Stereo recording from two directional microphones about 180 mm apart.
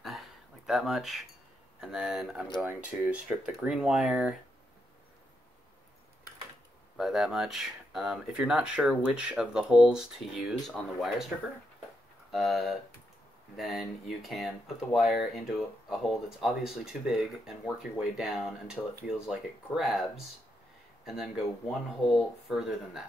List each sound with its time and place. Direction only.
0.0 s a sound: centre (ahead or behind)
1.8 s speech: 5° right (ahead or behind)
7.0 s speech: centre (ahead or behind)